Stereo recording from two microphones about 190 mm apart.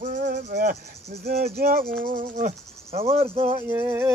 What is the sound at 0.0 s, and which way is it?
Cricket, 40° right (ahead or behind).